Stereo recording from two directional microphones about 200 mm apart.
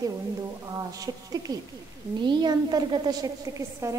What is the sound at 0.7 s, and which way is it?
A woman's voice, 20° right (ahead or behind).